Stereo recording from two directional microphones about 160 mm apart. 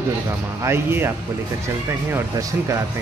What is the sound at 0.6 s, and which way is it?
Speech, 15° right (ahead or behind).